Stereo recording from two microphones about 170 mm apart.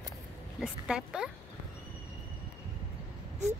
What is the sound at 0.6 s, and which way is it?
Speech, 5° right (ahead or behind).